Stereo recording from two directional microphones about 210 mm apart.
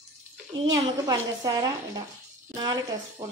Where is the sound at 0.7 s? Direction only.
15° right (ahead or behind).